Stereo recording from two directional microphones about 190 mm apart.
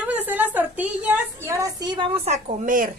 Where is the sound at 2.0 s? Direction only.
35° right (ahead or behind).